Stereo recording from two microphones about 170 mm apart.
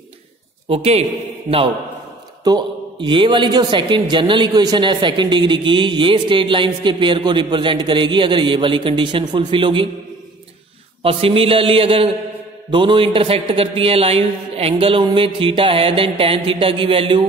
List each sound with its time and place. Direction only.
0.7 s a man's voice: 35° right (ahead or behind)
2.4 s a man's voice: 25° right (ahead or behind)
11.0 s a man's voice: 35° right (ahead or behind)